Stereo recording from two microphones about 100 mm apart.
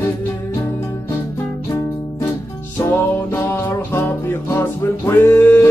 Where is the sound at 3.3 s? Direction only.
20° left (ahead or behind).